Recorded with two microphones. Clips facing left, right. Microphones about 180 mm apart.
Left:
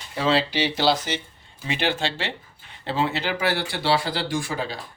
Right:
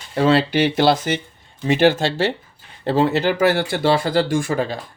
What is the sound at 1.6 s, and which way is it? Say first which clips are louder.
Speech: right 10 dB; 45° right (ahead or behind).